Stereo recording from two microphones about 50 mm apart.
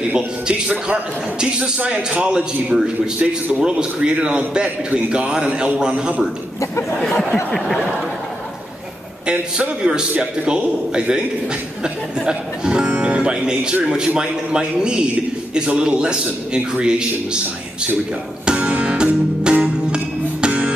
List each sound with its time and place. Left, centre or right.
0.1 s a man's voice: right
7.1 s a sound: centre
7.6 s speech: centre
9.2 s a man's voice: right
18.4 s music: right